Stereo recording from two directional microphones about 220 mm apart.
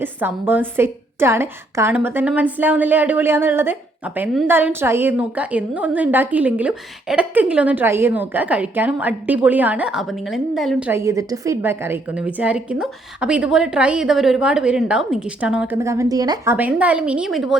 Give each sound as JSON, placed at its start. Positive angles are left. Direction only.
{"t": 0.0, "sound": "a woman's voice", "side_deg": -10}
{"t": 16.6, "sound": "a woman's voice", "side_deg": -5}